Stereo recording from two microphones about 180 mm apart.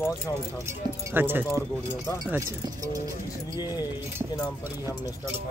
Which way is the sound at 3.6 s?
20° left (ahead or behind).